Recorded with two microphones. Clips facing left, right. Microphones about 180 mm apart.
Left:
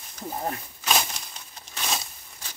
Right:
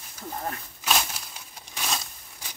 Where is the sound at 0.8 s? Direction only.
5° right (ahead or behind).